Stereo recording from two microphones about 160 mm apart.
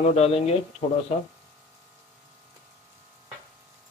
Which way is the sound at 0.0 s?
40° left (ahead or behind).